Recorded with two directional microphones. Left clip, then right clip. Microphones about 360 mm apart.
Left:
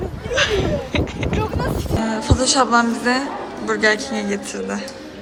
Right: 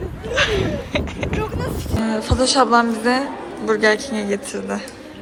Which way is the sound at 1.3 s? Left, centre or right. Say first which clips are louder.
Left 3 dB; left.